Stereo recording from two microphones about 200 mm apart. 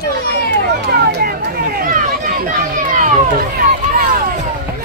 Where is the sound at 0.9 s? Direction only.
50° right (ahead or behind).